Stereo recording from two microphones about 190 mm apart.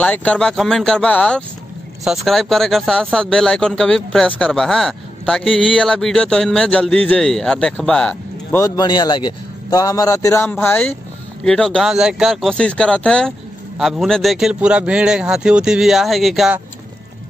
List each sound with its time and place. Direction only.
0.0 s a man's voice: 5° left (ahead or behind)
8.7 s a man's voice: 20° left (ahead or behind); by 16.6 s 5° right (ahead or behind)